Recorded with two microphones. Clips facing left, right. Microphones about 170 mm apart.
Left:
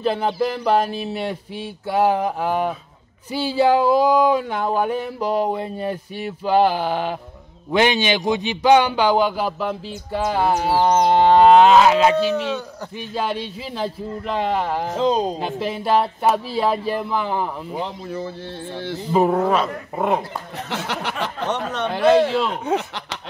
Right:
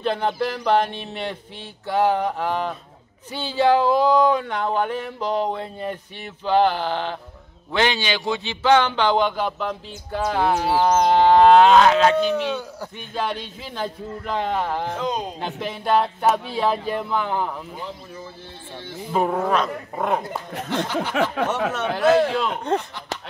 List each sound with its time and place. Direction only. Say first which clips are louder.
0.0 s speech: left 2 dB; 5° left (ahead or behind)
15.0 s speech: left 7 dB; 30° left (ahead or behind)
15.3 s speech: left 4 dB; 5° left (ahead or behind)
17.7 s speech: left 7 dB; 70° left (ahead or behind)
19.1 s speech: left 3 dB; 5° left (ahead or behind)
20.8 s speech: right 3 dB; 70° left (ahead or behind)
21.1 s a sound: right 5 dB; 70° right (ahead or behind)
21.7 s speech: left 3 dB; 5° right (ahead or behind)